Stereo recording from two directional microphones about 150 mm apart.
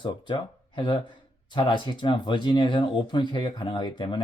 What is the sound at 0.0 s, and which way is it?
Speech, 30° left (ahead or behind).